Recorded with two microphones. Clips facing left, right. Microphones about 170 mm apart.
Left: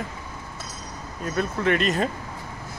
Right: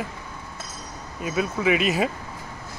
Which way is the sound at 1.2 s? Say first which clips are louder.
Right 1 dB; 5° right (ahead or behind).